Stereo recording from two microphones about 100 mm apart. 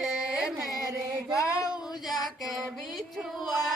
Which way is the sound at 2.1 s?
Centre (ahead or behind).